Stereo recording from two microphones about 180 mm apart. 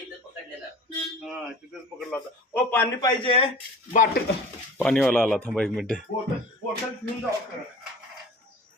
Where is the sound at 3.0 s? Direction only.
25° left (ahead or behind).